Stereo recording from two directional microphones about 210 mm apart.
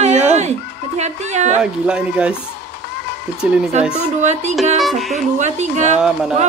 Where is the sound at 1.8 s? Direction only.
5° right (ahead or behind).